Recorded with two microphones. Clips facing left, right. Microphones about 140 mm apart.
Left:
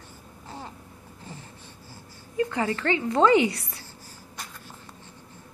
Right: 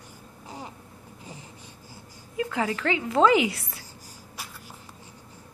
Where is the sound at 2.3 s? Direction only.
5° right (ahead or behind).